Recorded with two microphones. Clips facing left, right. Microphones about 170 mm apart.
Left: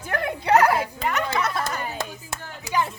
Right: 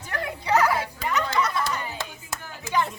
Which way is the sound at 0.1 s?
55° left (ahead or behind).